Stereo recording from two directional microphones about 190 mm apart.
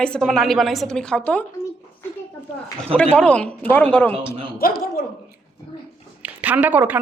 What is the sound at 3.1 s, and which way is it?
Speech, 5° left (ahead or behind).